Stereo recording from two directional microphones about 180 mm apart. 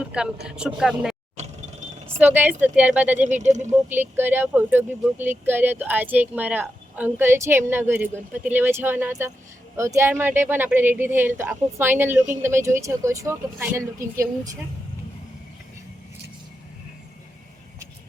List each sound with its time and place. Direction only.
0.0 s speech: 5° right (ahead or behind)
1.4 s mechanisms: 40° right (ahead or behind)
2.2 s speech: 10° right (ahead or behind)
3.2 s speech: 40° right (ahead or behind)
3.8 s speech: 10° right (ahead or behind)